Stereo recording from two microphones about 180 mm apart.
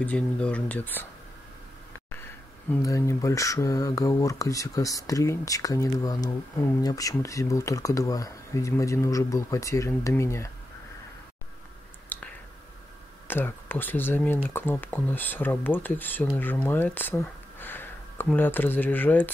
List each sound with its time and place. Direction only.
0.0 s speech: 5° left (ahead or behind)
2.8 s speech: 20° left (ahead or behind)
12.1 s a sound: 10° left (ahead or behind)
13.3 s speech: 10° left (ahead or behind)